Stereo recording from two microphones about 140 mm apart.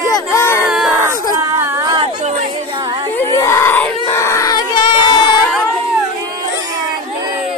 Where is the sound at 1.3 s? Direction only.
20° right (ahead or behind).